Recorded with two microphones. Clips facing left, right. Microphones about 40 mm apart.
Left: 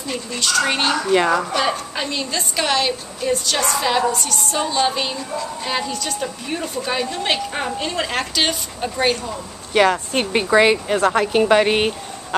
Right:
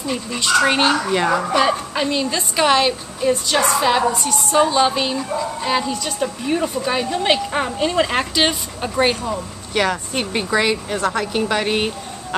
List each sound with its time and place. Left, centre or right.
0.0 s a woman's voice: centre
0.4 s a woman's voice: centre
1.1 s speech: centre
1.4 s a woman's voice: centre
9.8 s speech: centre